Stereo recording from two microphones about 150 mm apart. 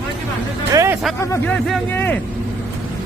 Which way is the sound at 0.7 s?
20° right (ahead or behind).